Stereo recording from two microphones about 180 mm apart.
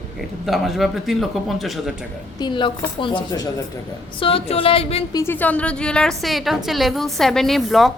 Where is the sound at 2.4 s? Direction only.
25° left (ahead or behind).